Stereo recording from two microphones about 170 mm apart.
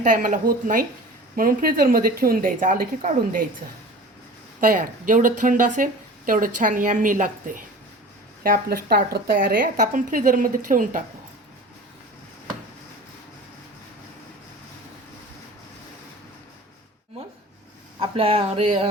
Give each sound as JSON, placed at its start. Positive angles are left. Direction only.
{"t": 0.0, "sound": "speech", "side_deg": -50}
{"t": 4.6, "sound": "speech", "side_deg": -55}
{"t": 18.0, "sound": "speech", "side_deg": -35}